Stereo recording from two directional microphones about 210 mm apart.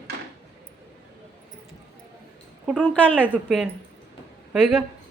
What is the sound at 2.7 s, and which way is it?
Speech, 5° left (ahead or behind).